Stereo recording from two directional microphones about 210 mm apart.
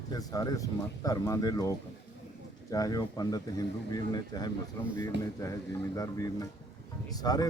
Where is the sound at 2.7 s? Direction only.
15° left (ahead or behind).